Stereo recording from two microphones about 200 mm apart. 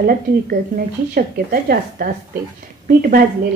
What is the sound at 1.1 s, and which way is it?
A woman's voice, 45° right (ahead or behind).